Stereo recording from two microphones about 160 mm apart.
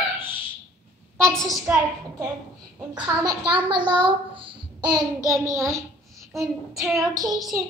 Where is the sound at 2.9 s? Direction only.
25° right (ahead or behind).